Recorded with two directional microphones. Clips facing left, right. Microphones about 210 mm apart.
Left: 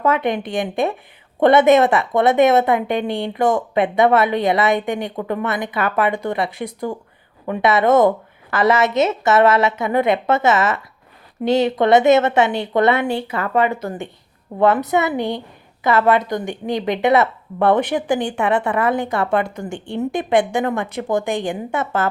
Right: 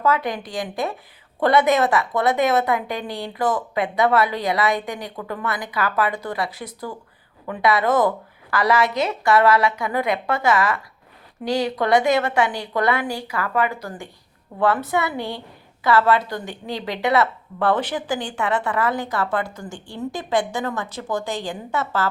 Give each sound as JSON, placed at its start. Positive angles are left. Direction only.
{"t": 0.0, "sound": "a woman's voice", "side_deg": 25}
{"t": 20.9, "sound": "a woman's voice", "side_deg": 60}